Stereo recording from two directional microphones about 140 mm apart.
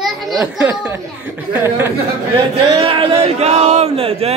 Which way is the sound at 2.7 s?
40° right (ahead or behind).